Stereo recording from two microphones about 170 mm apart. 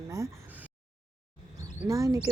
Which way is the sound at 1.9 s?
20° right (ahead or behind).